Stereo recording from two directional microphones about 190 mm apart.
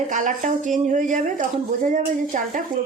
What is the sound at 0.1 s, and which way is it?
Speech, 40° right (ahead or behind).